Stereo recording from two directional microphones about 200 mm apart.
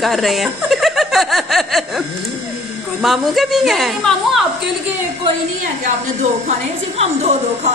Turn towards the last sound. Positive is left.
turn(degrees=-35)  # may be behind; listen again after turning